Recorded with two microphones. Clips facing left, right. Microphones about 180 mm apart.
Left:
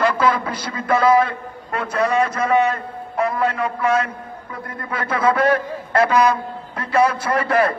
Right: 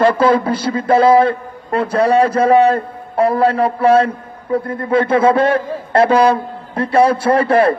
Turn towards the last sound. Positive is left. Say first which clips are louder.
# right 6 dB
turn(degrees=-30)  # may be behind; listen again after turning